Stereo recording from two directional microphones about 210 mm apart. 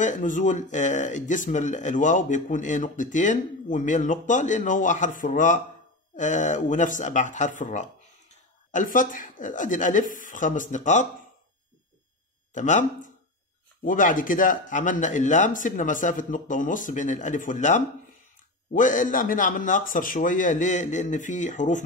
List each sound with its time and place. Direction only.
0.0 s speech: 35° left (ahead or behind)
12.5 s speech: 35° left (ahead or behind)